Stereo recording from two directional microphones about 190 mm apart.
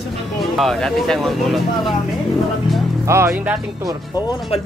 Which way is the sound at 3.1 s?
10° right (ahead or behind).